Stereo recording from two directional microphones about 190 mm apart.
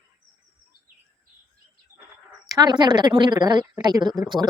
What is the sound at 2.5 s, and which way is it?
Speech, 20° right (ahead or behind).